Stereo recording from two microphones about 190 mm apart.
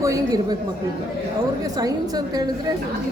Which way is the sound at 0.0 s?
15° right (ahead or behind).